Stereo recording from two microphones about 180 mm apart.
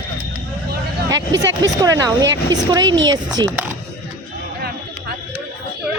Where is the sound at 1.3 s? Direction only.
90° right.